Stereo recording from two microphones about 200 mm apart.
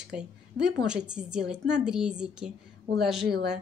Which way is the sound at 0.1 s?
5° right (ahead or behind).